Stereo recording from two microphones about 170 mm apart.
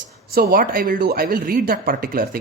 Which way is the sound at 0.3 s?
60° right (ahead or behind).